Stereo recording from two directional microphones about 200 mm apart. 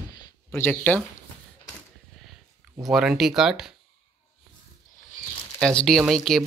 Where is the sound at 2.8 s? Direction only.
Centre (ahead or behind).